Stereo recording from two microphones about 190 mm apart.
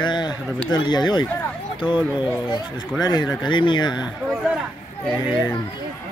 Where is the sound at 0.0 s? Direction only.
20° left (ahead or behind).